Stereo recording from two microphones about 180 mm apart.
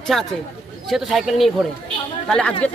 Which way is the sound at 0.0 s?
Centre (ahead or behind).